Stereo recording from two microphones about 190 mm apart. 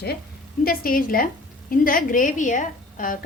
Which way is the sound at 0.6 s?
50° left (ahead or behind).